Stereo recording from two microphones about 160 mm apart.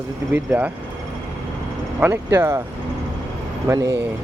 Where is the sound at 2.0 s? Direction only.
15° right (ahead or behind).